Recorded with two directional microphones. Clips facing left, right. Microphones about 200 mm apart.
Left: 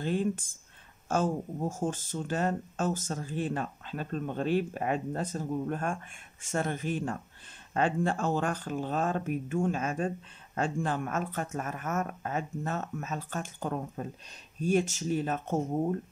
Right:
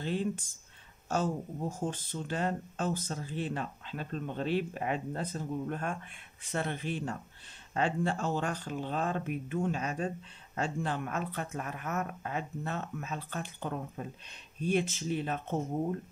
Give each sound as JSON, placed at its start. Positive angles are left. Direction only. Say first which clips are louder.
{"t": 0.0, "sound": "speech", "louder": "left 3 dB", "side_deg": 50}